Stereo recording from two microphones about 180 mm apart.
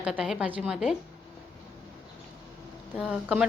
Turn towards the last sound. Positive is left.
turn(degrees=-5)  # may be behind; listen again after turning